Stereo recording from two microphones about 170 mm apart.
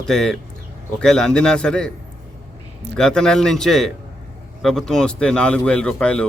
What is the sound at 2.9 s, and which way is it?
Speech, 5° left (ahead or behind).